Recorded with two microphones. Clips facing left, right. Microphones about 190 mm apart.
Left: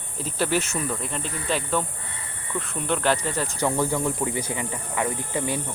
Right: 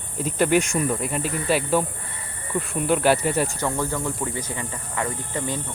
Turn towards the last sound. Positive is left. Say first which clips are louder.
# left 1 dB
turn(degrees=15)  # may be behind; listen again after turning